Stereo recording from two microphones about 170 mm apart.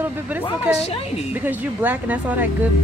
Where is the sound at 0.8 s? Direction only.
35° left (ahead or behind).